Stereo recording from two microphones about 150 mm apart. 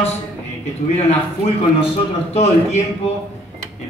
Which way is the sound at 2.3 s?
45° left (ahead or behind).